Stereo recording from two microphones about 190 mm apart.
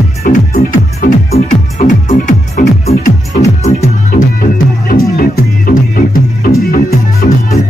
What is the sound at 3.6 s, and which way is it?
Music, 45° left (ahead or behind).